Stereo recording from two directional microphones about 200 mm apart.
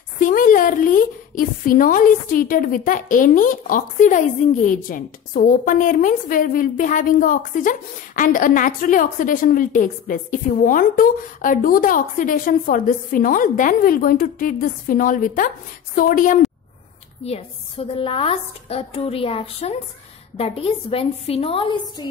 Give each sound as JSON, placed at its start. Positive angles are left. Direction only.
{"t": 0.2, "sound": "a woman's voice", "side_deg": 45}
{"t": 17.2, "sound": "a woman's voice", "side_deg": 30}